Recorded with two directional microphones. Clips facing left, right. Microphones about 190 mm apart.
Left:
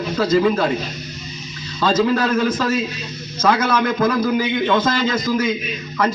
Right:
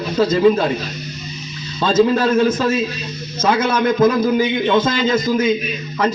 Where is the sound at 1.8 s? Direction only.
25° right (ahead or behind).